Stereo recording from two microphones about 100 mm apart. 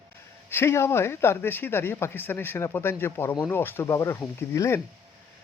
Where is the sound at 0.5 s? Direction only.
25° left (ahead or behind).